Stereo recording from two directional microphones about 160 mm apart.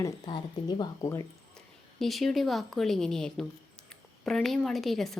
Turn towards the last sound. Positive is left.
turn(degrees=0)  # may be behind; listen again after turning